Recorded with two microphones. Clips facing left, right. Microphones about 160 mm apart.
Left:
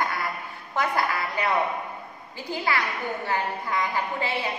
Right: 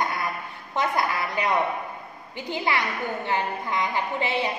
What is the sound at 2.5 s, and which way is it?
A woman's voice, 20° right (ahead or behind).